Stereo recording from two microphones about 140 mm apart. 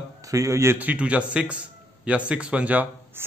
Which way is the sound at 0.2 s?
25° right (ahead or behind).